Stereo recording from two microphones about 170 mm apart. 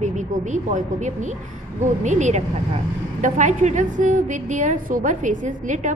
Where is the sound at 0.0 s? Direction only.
45° right (ahead or behind).